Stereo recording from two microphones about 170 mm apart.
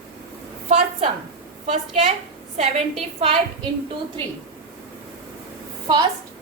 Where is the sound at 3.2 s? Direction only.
30° right (ahead or behind).